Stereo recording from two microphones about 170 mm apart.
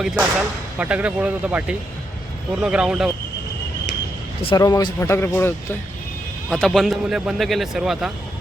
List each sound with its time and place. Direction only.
0.0 s speech: 5° right (ahead or behind)
4.4 s speech: 20° left (ahead or behind)
6.5 s speech: centre (ahead or behind)